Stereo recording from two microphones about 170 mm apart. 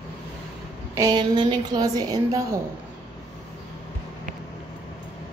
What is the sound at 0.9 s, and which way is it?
A woman's voice, 25° right (ahead or behind).